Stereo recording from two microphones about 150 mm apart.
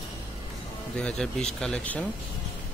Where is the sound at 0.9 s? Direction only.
5° left (ahead or behind).